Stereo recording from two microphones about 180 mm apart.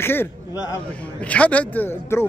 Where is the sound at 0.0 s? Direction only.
10° left (ahead or behind).